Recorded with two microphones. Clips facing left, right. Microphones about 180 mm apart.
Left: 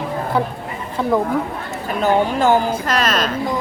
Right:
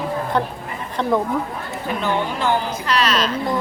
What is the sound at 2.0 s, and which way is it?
A woman's voice, 45° left (ahead or behind).